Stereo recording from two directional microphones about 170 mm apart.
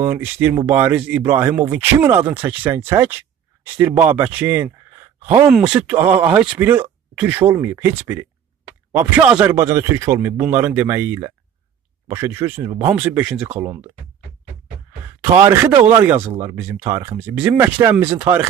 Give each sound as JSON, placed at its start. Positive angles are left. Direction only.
{"t": 0.0, "sound": "speech", "side_deg": -10}
{"t": 15.4, "sound": "speech", "side_deg": -15}